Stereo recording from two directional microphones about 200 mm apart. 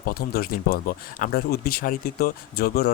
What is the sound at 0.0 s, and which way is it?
Speech, 50° left (ahead or behind).